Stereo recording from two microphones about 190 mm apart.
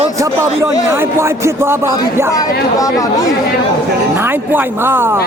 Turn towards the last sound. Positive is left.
turn(degrees=-10)  # may be behind; listen again after turning